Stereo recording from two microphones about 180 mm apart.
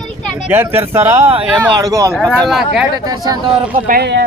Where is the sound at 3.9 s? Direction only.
65° right (ahead or behind).